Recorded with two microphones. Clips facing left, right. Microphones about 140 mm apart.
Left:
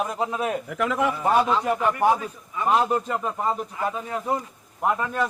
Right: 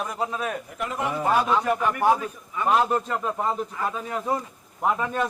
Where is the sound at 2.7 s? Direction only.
5° left (ahead or behind).